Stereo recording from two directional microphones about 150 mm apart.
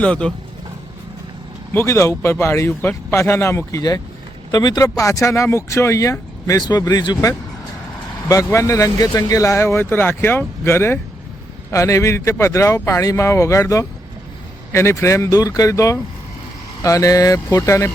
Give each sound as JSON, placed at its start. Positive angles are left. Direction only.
{"t": 0.0, "sound": "speech", "side_deg": 5}
{"t": 1.7, "sound": "speech", "side_deg": 15}